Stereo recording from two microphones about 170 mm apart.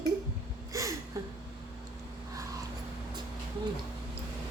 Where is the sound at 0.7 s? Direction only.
20° right (ahead or behind).